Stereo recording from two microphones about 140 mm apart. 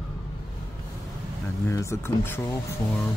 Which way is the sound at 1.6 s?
20° left (ahead or behind).